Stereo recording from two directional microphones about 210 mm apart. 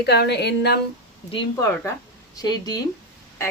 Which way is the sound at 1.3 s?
20° left (ahead or behind).